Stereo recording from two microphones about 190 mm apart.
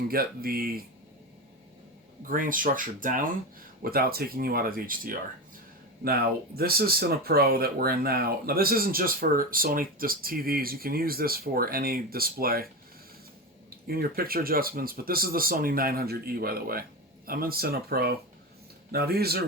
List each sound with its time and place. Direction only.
0.1 s speech: 50° right (ahead or behind)
2.2 s speech: 45° right (ahead or behind)
13.7 s speech: 55° right (ahead or behind)